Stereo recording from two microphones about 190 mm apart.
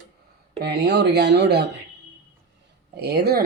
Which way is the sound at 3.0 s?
55° right (ahead or behind).